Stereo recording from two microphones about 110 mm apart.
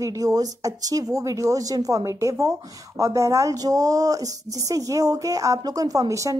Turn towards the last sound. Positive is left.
turn(degrees=-30)  # may be behind; listen again after turning